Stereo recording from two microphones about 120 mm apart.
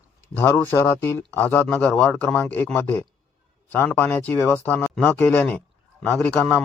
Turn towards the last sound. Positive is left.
turn(degrees=10)  # may be behind; listen again after turning